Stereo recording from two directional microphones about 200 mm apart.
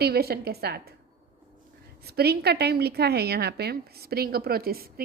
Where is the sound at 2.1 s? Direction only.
55° right (ahead or behind).